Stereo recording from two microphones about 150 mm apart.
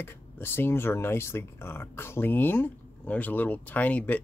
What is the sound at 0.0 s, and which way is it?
Speech, 15° left (ahead or behind).